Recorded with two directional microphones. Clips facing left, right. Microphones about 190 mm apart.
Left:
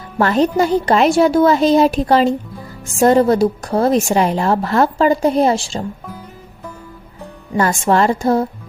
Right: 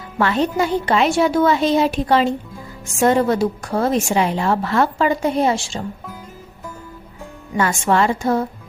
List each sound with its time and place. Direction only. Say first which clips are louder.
0.2 s a woman's voice: left 4 dB; 40° left (ahead or behind)
7.5 s a woman's voice: left 3 dB; 35° left (ahead or behind)